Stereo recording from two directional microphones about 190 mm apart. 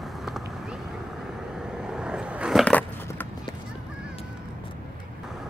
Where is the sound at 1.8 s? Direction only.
5° right (ahead or behind).